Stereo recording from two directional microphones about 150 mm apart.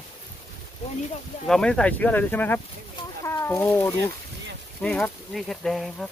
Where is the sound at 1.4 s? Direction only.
5° left (ahead or behind); by 3.9 s 20° left (ahead or behind).